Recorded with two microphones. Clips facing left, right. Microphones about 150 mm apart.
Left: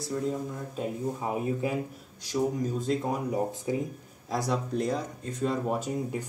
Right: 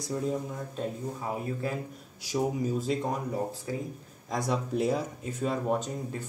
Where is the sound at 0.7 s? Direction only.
15° left (ahead or behind).